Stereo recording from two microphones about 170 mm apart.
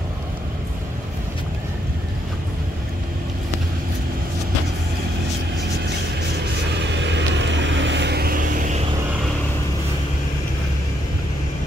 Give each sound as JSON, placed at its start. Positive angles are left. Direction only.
{"t": 7.0, "sound": "vehicle", "side_deg": -90}